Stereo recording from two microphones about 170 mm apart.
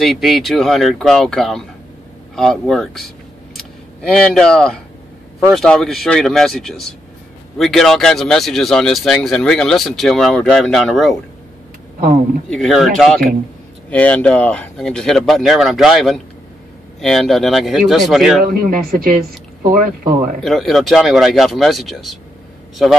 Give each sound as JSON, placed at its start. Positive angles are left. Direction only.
{"t": 0.0, "sound": "speech", "side_deg": 0}
{"t": 4.1, "sound": "speech", "side_deg": 5}
{"t": 12.4, "sound": "speech", "side_deg": 5}
{"t": 18.4, "sound": "speech", "side_deg": -55}
{"t": 20.4, "sound": "speech", "side_deg": 0}